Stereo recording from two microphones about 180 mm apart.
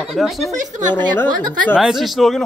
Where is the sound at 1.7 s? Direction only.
Centre (ahead or behind).